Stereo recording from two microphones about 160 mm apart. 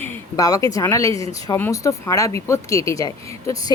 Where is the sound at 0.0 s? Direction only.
20° left (ahead or behind).